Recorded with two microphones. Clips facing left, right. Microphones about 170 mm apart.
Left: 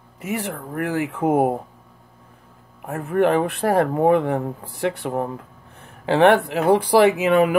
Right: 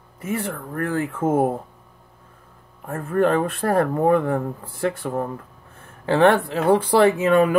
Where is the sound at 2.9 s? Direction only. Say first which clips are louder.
Left 1 dB; 15° left (ahead or behind).